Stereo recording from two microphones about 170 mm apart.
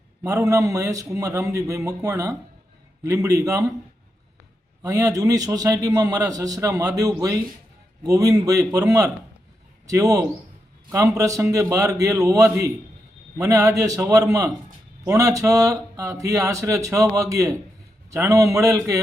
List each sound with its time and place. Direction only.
0.2 s a man's voice: 15° right (ahead or behind)
4.8 s a man's voice: 20° right (ahead or behind)